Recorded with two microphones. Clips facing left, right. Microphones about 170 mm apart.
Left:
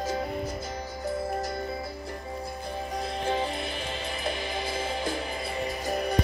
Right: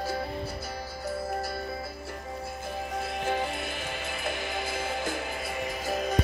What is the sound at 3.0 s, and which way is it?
Music, 15° left (ahead or behind).